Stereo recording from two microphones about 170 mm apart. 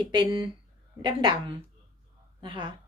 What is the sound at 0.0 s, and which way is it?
A woman's voice, 25° right (ahead or behind).